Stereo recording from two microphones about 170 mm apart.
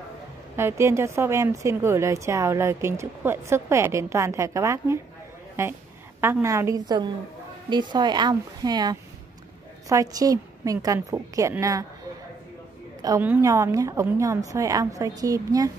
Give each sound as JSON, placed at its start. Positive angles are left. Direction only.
{"t": 0.6, "sound": "a woman's voice", "side_deg": -15}
{"t": 13.2, "sound": "a woman's voice", "side_deg": -15}